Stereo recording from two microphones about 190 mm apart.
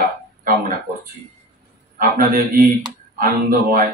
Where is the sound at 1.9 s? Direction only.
50° right (ahead or behind).